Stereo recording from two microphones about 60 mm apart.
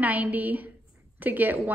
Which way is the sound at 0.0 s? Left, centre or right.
Right.